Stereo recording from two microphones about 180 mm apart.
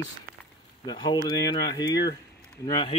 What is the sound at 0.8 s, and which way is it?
Speech, 25° left (ahead or behind).